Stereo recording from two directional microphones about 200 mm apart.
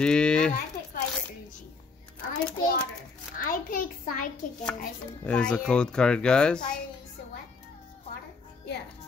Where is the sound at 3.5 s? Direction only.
45° left (ahead or behind).